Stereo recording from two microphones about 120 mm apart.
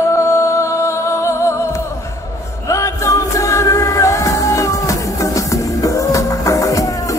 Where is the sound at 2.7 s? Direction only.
25° left (ahead or behind).